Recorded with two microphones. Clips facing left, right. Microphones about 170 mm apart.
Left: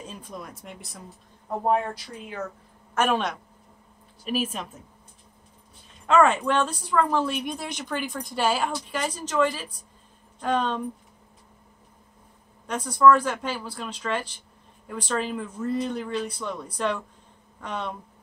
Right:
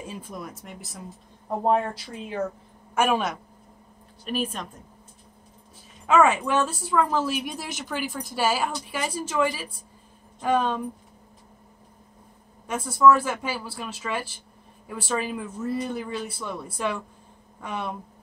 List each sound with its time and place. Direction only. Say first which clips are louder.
0.0 s a woman's voice: right 2 dB; 10° right (ahead or behind)
2.2 s speech: right 5 dB; 30° right (ahead or behind)
2.9 s a woman's voice: right 1 dB; 10° right (ahead or behind)
4.2 s a woman's voice: left 1 dB; 5° left (ahead or behind)
6.0 s a woman's voice: even; 5° right (ahead or behind)
12.6 s speech: even; 5° right (ahead or behind)